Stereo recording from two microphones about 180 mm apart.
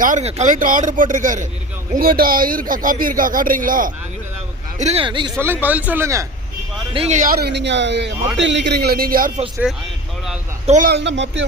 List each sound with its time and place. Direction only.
0.0 s a man's voice: 40° right (ahead or behind)
4.8 s speech: 35° right (ahead or behind)
5.4 s speech: 10° right (ahead or behind)
6.9 s speech: 35° right (ahead or behind); by 8.1 s 75° right (ahead or behind)
8.4 s a man's voice: 85° right; by 9.3 s 55° right (ahead or behind)
9.6 s speech: 10° right (ahead or behind)
10.7 s a man's voice: 45° right (ahead or behind)
10.9 s speech: 85° right